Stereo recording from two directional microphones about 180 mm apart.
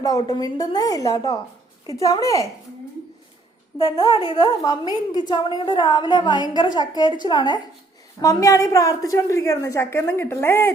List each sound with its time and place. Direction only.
0.0 s a woman's voice: 20° left (ahead or behind)
3.8 s a woman's voice: 20° left (ahead or behind)